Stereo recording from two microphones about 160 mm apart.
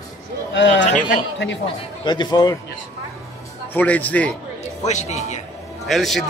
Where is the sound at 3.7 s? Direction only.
10° left (ahead or behind).